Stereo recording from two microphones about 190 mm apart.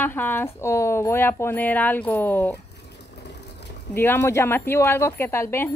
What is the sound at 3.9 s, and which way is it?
Speech, 10° left (ahead or behind).